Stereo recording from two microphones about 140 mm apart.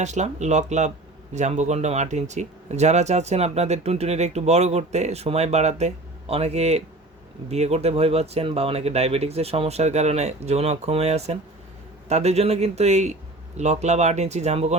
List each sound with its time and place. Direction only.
0.0 s speech: 55° right (ahead or behind)